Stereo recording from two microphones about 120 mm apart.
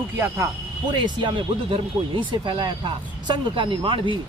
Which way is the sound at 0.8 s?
40° right (ahead or behind).